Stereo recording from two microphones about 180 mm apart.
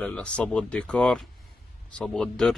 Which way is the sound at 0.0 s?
5° left (ahead or behind).